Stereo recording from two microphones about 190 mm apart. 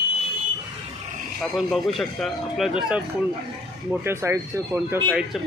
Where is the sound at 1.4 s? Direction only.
Centre (ahead or behind).